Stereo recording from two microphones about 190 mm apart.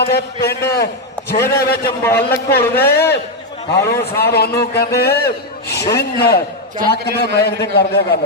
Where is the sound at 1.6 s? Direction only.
55° left (ahead or behind).